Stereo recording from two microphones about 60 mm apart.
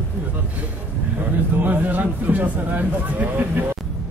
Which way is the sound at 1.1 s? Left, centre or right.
Right.